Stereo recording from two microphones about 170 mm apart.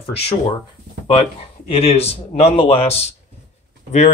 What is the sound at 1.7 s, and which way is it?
Speech, 35° left (ahead or behind).